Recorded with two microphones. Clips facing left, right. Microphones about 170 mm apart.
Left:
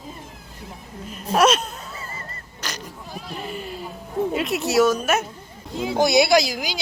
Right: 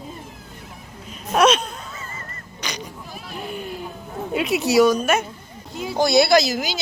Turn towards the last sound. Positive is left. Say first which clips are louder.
# right 1 dB
turn(degrees=10)  # may be behind; listen again after turning